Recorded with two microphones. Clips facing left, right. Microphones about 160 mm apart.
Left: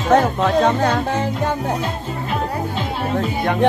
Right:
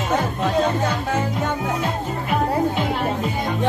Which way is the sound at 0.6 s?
90° left.